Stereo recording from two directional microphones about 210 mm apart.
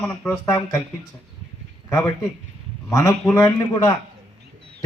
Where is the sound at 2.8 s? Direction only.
15° left (ahead or behind).